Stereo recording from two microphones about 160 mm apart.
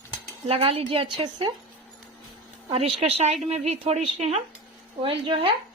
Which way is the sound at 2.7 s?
40° right (ahead or behind).